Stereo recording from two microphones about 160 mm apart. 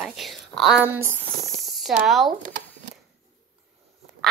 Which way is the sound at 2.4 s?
55° right (ahead or behind).